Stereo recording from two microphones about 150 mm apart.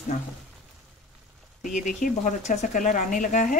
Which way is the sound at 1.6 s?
55° left (ahead or behind).